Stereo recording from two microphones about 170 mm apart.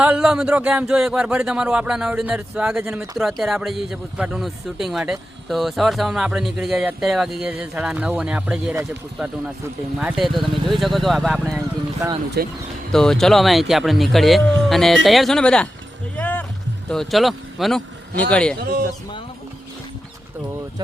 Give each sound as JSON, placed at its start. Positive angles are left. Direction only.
{"t": 0.0, "sound": "speech", "side_deg": -5}
{"t": 10.0, "sound": "speech", "side_deg": -5}
{"t": 11.9, "sound": "speech", "side_deg": -20}
{"t": 12.9, "sound": "speech", "side_deg": 5}
{"t": 16.1, "sound": "music", "side_deg": 10}
{"t": 16.9, "sound": "speech", "side_deg": 0}
{"t": 18.6, "sound": "speech", "side_deg": -60}